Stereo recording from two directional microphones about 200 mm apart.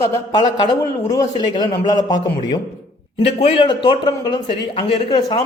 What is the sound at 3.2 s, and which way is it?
Speech, 30° left (ahead or behind).